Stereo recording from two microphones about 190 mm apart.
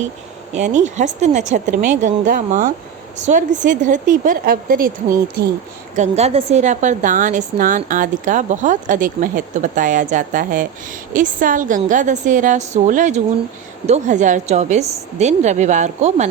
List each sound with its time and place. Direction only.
0.5 s a woman's voice: 40° right (ahead or behind)
6.0 s a woman's voice: 35° right (ahead or behind)